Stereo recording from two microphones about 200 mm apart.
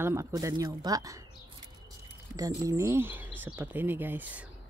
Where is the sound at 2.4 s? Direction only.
15° right (ahead or behind).